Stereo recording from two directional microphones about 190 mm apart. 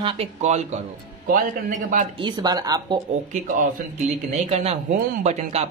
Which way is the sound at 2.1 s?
25° right (ahead or behind).